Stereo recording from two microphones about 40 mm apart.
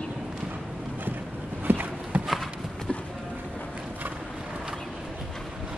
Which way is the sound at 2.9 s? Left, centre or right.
Left.